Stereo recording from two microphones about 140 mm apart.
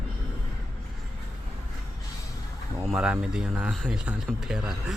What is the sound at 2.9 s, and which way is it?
Speech, 5° right (ahead or behind).